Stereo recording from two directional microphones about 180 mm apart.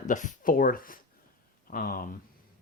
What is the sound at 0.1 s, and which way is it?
Speech, 45° left (ahead or behind).